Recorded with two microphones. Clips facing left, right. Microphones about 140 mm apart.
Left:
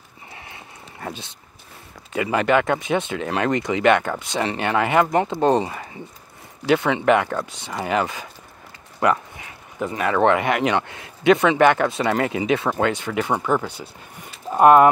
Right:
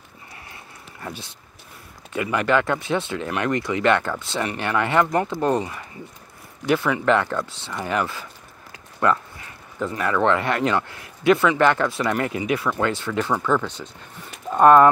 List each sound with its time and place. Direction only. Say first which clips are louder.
1.0 s speech: left 2 dB; 20° left (ahead or behind)
2.3 s speech: left 2 dB; 15° left (ahead or behind)
9.8 s speech: left 2 dB; 20° left (ahead or behind)
12.9 s speech: left 1 dB; 15° left (ahead or behind)
14.5 s speech: left 1 dB; 10° left (ahead or behind)